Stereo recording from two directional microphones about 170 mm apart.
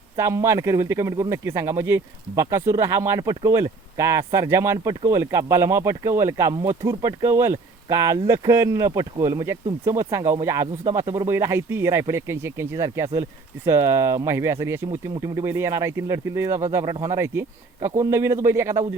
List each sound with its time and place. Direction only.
0.2 s speech: 15° right (ahead or behind)